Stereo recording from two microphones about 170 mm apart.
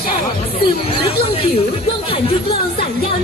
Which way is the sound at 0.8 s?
35° left (ahead or behind).